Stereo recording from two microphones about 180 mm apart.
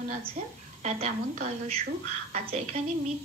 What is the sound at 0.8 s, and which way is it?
A woman's voice, 40° right (ahead or behind).